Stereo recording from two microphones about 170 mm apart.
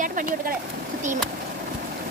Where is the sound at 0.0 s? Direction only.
50° right (ahead or behind).